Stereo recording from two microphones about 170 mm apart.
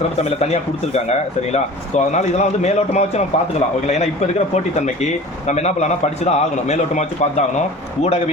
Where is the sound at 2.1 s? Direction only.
40° left (ahead or behind).